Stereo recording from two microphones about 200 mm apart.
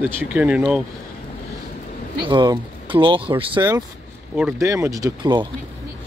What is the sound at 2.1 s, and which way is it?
Speech, 25° right (ahead or behind).